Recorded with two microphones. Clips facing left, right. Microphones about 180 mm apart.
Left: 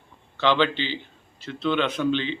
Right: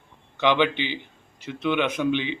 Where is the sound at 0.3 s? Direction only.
15° right (ahead or behind).